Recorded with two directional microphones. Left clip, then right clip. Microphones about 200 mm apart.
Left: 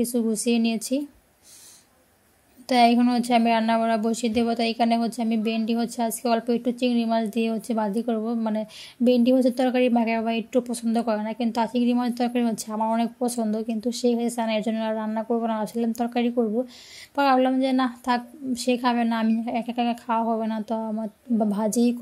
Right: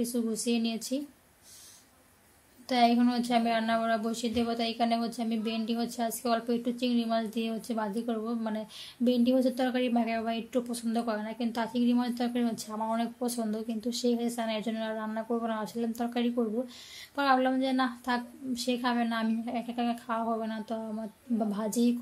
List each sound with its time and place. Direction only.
0.0 s a woman's voice: 35° left (ahead or behind)
2.6 s a woman's voice: 35° left (ahead or behind)